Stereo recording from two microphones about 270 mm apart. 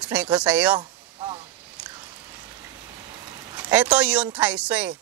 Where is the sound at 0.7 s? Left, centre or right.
Centre.